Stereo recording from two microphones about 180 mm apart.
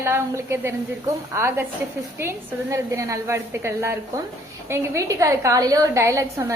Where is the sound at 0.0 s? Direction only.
15° right (ahead or behind).